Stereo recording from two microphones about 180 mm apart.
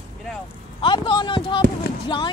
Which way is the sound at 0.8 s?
25° left (ahead or behind).